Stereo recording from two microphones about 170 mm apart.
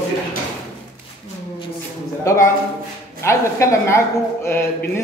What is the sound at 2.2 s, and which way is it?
A man's voice, 15° left (ahead or behind).